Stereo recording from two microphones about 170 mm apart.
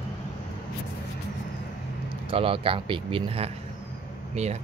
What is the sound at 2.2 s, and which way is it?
Speech, 35° right (ahead or behind).